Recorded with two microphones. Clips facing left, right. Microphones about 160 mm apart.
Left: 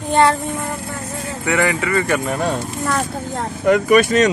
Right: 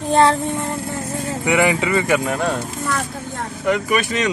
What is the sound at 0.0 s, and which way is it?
Speech, 30° right (ahead or behind).